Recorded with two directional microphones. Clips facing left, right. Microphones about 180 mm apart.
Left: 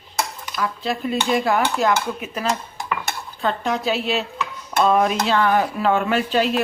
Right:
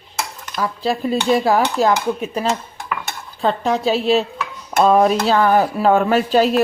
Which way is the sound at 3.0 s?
35° right (ahead or behind).